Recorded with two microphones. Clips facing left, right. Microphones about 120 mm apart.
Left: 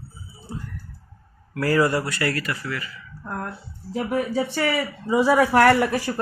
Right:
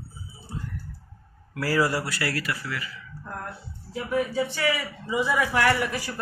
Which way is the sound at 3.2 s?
60° left (ahead or behind).